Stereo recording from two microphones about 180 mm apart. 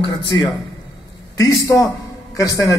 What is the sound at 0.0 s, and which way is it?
Speech, 25° left (ahead or behind).